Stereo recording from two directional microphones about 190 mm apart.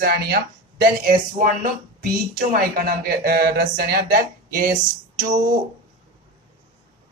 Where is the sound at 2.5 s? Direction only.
50° right (ahead or behind).